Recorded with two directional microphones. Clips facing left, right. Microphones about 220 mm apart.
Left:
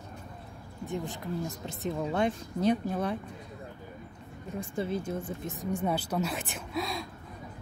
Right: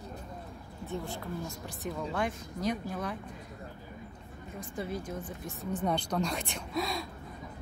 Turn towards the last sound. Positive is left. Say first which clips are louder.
# even
turn(degrees=0)  # may be behind; listen again after turning